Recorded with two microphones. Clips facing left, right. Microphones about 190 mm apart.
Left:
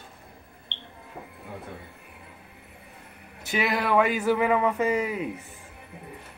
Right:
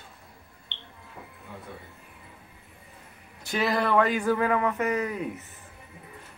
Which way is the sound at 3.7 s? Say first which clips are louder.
Even; 10° left (ahead or behind).